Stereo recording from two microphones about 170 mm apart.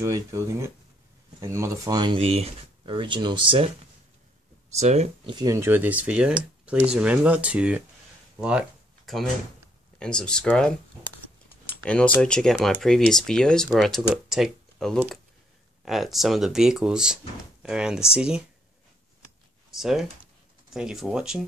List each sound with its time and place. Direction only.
0.0 s speech: 15° right (ahead or behind)
4.7 s speech: 40° right (ahead or behind)
5.3 s speech: 20° right (ahead or behind)
8.4 s a sound: 5° right (ahead or behind)
9.9 s speech: 5° left (ahead or behind)
11.8 s speech: 5° left (ahead or behind)
19.7 s speech: centre (ahead or behind)